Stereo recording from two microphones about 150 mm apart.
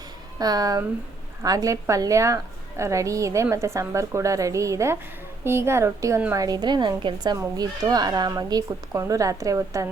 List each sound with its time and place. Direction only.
0.3 s a woman's voice: 25° right (ahead or behind)